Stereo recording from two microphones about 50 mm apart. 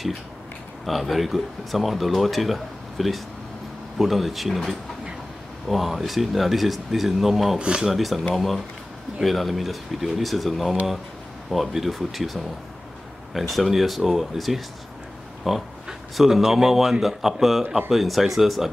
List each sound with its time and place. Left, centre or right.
0.8 s speech: centre
7.5 s speech: centre
7.9 s speech: centre